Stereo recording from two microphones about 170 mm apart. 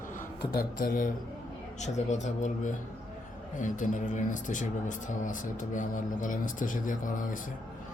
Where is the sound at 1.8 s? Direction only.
45° left (ahead or behind).